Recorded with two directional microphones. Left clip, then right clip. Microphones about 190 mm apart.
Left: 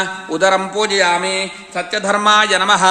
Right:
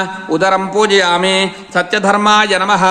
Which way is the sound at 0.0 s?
10° right (ahead or behind).